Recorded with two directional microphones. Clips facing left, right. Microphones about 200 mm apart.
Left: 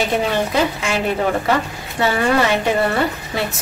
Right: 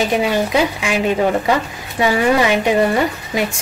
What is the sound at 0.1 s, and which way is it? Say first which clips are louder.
A woman's voice: right 2 dB; 15° right (ahead or behind).